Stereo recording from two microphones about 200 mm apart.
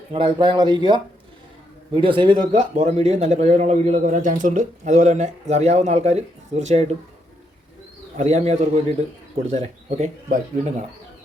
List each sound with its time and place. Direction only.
0.1 s a man's voice: 25° right (ahead or behind)
8.1 s a man's voice: 35° right (ahead or behind)